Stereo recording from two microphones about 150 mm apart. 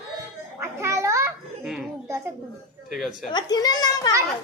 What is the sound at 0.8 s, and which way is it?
Children playing, 20° right (ahead or behind).